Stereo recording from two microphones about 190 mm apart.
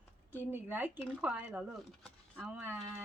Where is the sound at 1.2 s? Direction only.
5° right (ahead or behind).